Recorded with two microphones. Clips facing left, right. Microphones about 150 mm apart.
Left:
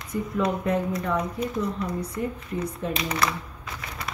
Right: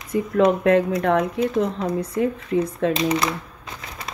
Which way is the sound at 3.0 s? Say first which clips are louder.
Right 5 dB; 20° right (ahead or behind).